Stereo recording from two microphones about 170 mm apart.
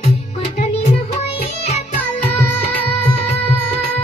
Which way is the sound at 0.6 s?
40° left (ahead or behind).